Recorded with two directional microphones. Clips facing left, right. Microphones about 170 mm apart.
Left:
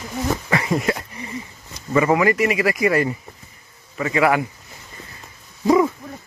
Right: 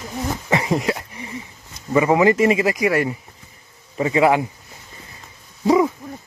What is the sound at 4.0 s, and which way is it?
Speech, 25° right (ahead or behind).